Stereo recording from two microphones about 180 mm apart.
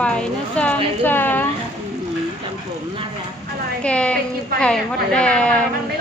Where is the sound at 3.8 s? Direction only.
5° left (ahead or behind).